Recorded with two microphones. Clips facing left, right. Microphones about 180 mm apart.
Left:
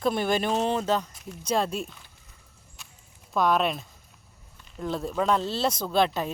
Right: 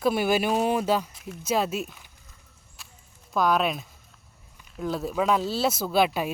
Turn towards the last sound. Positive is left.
turn(degrees=-10)  # may be behind; listen again after turning